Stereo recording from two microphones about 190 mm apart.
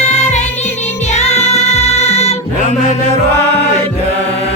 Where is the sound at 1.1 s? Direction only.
35° left (ahead or behind).